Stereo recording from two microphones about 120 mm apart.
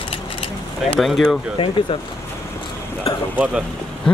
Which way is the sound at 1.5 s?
45° left (ahead or behind).